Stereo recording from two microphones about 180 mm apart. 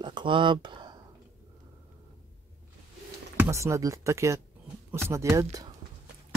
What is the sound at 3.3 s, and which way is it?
Speech, 15° right (ahead or behind).